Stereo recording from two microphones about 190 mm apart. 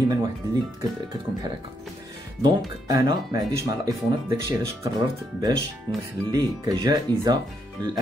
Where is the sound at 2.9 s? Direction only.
20° right (ahead or behind).